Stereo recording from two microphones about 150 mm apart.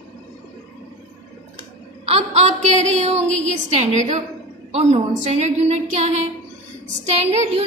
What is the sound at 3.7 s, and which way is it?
A woman's voice, 50° right (ahead or behind).